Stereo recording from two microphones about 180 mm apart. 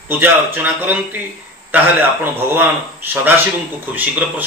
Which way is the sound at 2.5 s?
10° right (ahead or behind).